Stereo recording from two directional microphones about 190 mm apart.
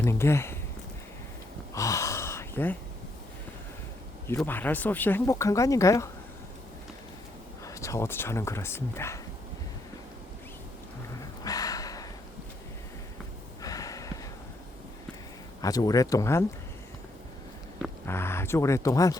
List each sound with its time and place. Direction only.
0.0 s speech: 15° left (ahead or behind)
1.7 s gasp: 15° left (ahead or behind)
4.3 s speech: 10° left (ahead or behind)
7.6 s speech: 15° left (ahead or behind)
11.2 s a sound: 20° left (ahead or behind)
13.6 s snort: 20° left (ahead or behind)
15.6 s speech: 20° left (ahead or behind)
18.0 s speech: 10° left (ahead or behind)